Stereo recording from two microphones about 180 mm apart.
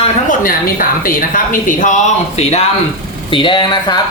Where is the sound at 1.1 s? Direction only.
50° left (ahead or behind).